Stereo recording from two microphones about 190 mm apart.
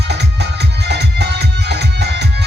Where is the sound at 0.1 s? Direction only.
60° right (ahead or behind).